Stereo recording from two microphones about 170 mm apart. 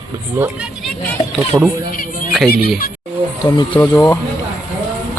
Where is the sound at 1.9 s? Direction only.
55° left (ahead or behind).